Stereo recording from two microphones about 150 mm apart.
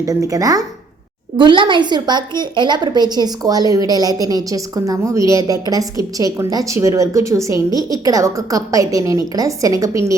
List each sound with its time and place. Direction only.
0.0 s a woman's voice: 20° right (ahead or behind)